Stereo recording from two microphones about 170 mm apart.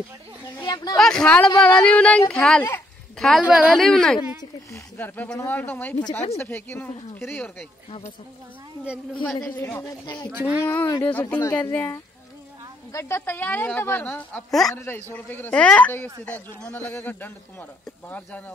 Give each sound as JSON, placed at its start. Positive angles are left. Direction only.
{"t": 0.6, "sound": "a sound", "side_deg": 25}
{"t": 0.9, "sound": "a woman's voice", "side_deg": 5}
{"t": 4.4, "sound": "speech", "side_deg": 15}
{"t": 9.1, "sound": "speech", "side_deg": 5}
{"t": 10.3, "sound": "speech", "side_deg": -10}
{"t": 10.6, "sound": "speech", "side_deg": 15}
{"t": 14.7, "sound": "speech", "side_deg": 15}